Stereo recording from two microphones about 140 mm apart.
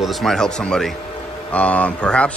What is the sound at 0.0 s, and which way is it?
Speech, centre (ahead or behind).